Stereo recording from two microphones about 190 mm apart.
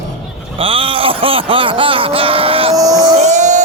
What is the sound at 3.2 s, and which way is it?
Crowd, 40° right (ahead or behind).